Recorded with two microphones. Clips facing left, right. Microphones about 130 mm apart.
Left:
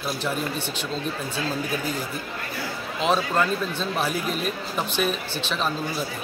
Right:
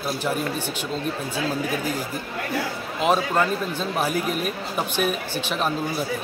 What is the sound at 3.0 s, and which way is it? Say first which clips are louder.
Speech: right 2 dB; 10° right (ahead or behind).